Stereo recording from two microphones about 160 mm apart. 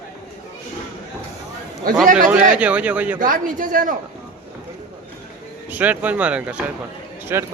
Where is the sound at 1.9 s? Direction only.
65° right (ahead or behind).